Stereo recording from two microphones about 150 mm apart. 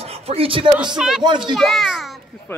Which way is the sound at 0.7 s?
5° right (ahead or behind).